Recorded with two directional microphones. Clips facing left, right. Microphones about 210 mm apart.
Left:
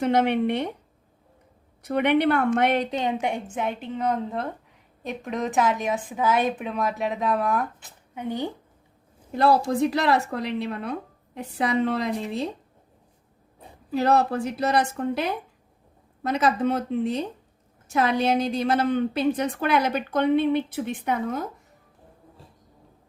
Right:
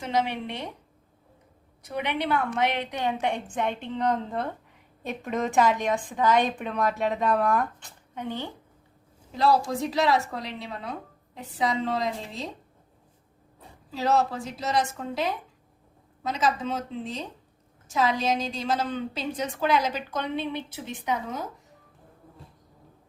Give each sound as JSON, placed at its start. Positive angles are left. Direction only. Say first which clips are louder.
{"t": 0.0, "sound": "a woman's voice", "louder": "left 7 dB", "side_deg": 60}
{"t": 1.8, "sound": "a woman's voice", "louder": "left 9 dB", "side_deg": 60}
{"t": 2.9, "sound": "a woman's voice", "louder": "left 2 dB", "side_deg": 20}
{"t": 9.3, "sound": "a woman's voice", "louder": "left 3 dB", "side_deg": 60}
{"t": 13.9, "sound": "a woman's voice", "louder": "left 4 dB", "side_deg": 60}